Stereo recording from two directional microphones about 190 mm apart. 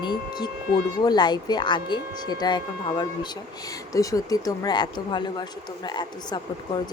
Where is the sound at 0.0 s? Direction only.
25° left (ahead or behind).